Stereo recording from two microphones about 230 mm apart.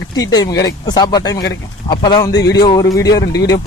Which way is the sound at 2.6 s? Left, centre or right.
Centre.